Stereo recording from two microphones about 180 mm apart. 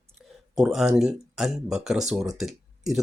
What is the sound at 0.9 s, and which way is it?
Speech, centre (ahead or behind).